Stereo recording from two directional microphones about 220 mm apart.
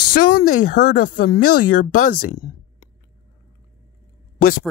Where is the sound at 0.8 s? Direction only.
35° left (ahead or behind).